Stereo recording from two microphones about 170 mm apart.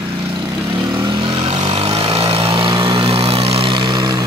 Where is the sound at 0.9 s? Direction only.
25° right (ahead or behind).